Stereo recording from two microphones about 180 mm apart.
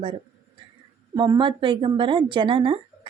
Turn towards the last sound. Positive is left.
turn(degrees=-30)  # may be behind; listen again after turning